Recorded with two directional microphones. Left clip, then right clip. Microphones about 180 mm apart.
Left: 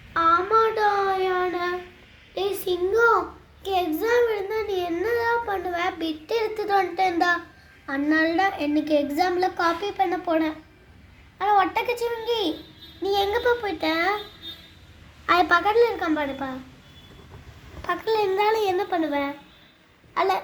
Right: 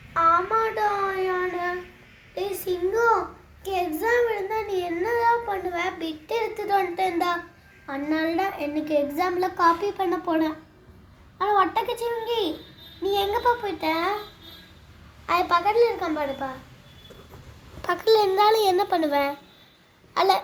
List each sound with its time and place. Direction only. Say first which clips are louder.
0.1 s child singing: left 1 dB; 35° left (ahead or behind)
3.6 s a child's voice: left 2 dB; 25° left (ahead or behind)
15.3 s a child's voice: left 2 dB; 30° left (ahead or behind)
16.0 s a woman's voice: left 2 dB; centre (ahead or behind)
17.8 s a child's voice: right 3 dB; 40° right (ahead or behind)